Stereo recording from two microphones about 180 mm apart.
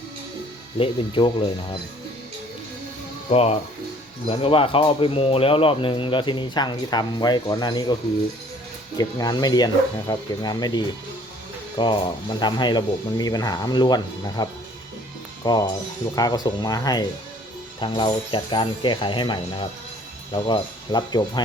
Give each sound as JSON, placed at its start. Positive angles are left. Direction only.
{"t": 0.8, "sound": "speech", "side_deg": 30}
{"t": 3.2, "sound": "speech", "side_deg": 35}
{"t": 9.0, "sound": "speech", "side_deg": 20}
{"t": 15.4, "sound": "speech", "side_deg": 20}